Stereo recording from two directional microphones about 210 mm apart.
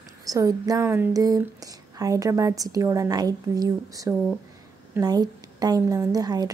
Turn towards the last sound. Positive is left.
turn(degrees=-20)  # may be behind; listen again after turning